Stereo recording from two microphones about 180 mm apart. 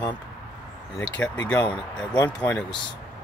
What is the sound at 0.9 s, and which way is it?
Speech, 5° left (ahead or behind).